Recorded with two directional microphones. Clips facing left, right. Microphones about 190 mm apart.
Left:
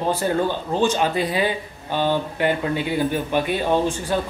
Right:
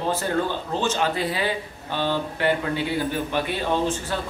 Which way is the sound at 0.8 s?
15° left (ahead or behind).